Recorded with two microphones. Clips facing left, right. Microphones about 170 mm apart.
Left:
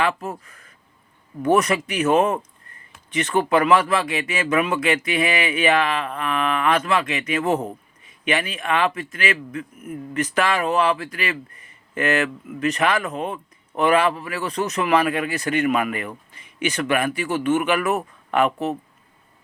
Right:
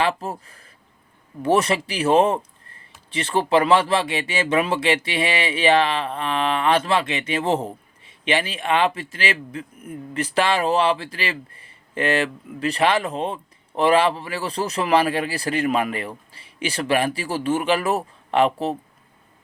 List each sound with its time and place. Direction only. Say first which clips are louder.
0.0 s speech: even; 30° right (ahead or behind)